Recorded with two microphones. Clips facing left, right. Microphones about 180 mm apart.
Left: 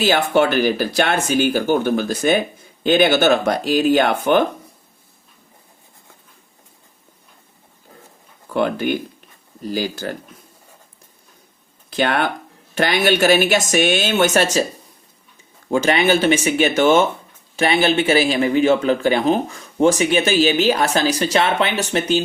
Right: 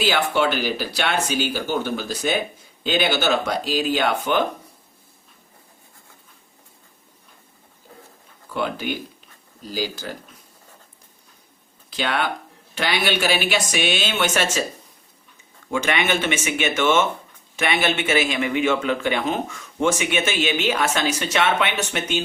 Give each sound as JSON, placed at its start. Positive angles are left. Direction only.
{"t": 0.0, "sound": "speech", "side_deg": 45}
{"t": 8.5, "sound": "speech", "side_deg": 50}
{"t": 11.9, "sound": "speech", "side_deg": 50}
{"t": 15.7, "sound": "speech", "side_deg": 35}